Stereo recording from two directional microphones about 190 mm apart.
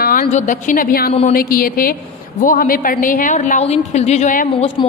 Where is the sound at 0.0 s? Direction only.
45° left (ahead or behind).